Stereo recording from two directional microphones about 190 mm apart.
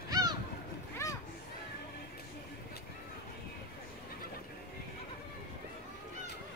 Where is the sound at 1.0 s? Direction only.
15° left (ahead or behind).